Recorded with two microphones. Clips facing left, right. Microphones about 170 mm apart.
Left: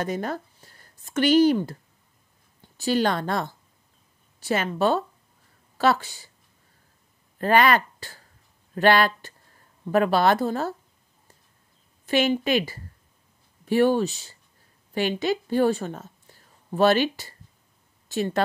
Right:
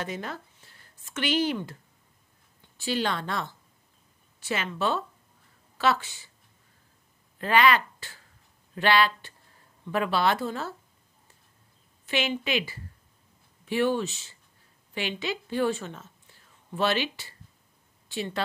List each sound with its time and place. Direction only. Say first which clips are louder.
0.0 s speech: left 7 dB; 45° left (ahead or behind)
2.8 s a woman's voice: left 6 dB; 45° left (ahead or behind)
7.3 s speech: left 3 dB; 45° left (ahead or behind)
12.1 s a woman's voice: left 7 dB; 45° left (ahead or behind)